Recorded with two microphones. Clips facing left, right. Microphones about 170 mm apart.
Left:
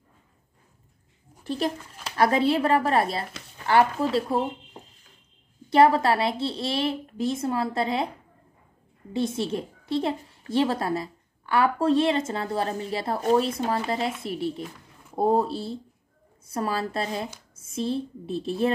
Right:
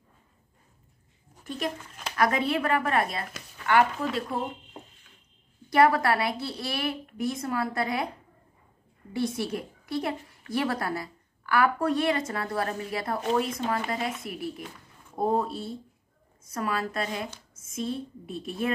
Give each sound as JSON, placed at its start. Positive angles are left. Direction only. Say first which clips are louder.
{"t": 1.4, "sound": "a woman's voice", "louder": "left 5 dB", "side_deg": 35}
{"t": 5.7, "sound": "a woman's voice", "louder": "left 3 dB", "side_deg": 25}
{"t": 9.1, "sound": "a woman's voice", "louder": "left 3 dB", "side_deg": 25}